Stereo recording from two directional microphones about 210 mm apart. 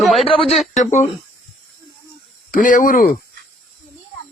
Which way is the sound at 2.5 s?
40° left (ahead or behind).